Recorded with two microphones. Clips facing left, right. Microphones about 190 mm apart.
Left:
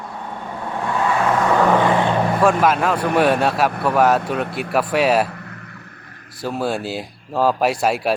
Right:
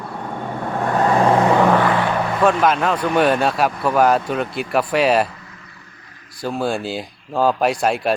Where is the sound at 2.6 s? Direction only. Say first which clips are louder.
Even; 5° left (ahead or behind).